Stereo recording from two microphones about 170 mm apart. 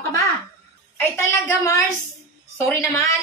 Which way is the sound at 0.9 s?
15° left (ahead or behind).